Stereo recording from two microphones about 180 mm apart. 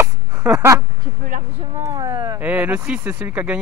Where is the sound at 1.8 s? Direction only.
25° right (ahead or behind).